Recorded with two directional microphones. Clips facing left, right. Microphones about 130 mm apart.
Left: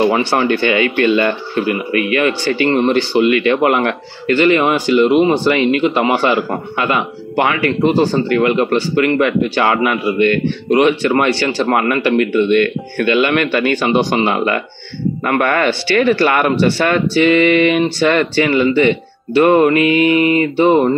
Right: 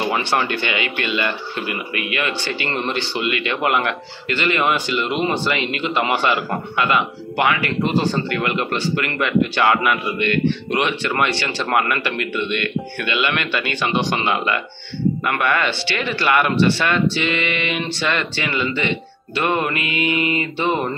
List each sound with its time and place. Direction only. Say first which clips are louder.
0.3 s speech: left 7 dB; 35° left (ahead or behind)
10.1 s speech: left 5 dB; 40° left (ahead or behind)